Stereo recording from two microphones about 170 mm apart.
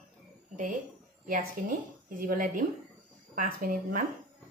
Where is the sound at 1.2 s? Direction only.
55° right (ahead or behind).